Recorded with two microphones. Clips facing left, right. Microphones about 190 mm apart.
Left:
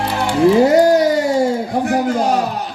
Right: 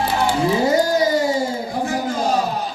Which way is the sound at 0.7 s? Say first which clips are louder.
Left 5 dB; 65° left (ahead or behind).